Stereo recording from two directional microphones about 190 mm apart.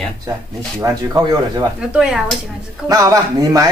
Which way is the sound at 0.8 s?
20° right (ahead or behind).